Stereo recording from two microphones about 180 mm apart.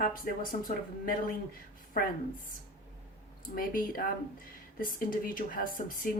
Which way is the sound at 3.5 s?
50° left (ahead or behind).